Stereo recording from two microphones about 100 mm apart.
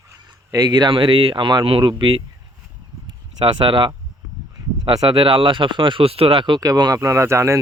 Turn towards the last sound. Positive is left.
turn(degrees=-30)  # may be behind; listen again after turning